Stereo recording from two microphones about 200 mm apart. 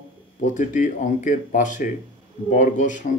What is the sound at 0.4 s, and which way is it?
Speech, 40° left (ahead or behind).